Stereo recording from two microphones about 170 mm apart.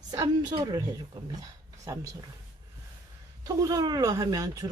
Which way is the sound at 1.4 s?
20° right (ahead or behind).